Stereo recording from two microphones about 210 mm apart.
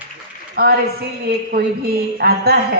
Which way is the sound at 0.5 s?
45° right (ahead or behind).